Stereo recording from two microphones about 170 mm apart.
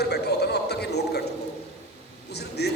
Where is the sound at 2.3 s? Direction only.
75° left (ahead or behind).